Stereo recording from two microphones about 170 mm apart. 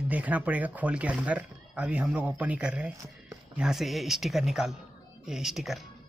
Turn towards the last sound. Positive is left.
turn(degrees=0)  # may be behind; listen again after turning